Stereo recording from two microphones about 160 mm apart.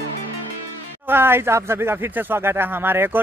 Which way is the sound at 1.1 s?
15° right (ahead or behind).